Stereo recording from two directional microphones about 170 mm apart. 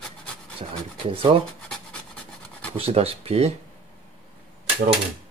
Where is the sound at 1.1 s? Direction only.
35° right (ahead or behind).